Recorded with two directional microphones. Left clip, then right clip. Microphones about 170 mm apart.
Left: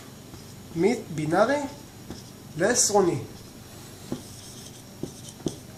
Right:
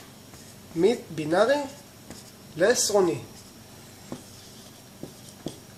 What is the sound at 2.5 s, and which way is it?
Speech, 35° right (ahead or behind).